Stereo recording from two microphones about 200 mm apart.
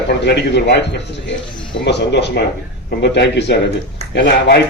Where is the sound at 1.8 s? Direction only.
60° left (ahead or behind).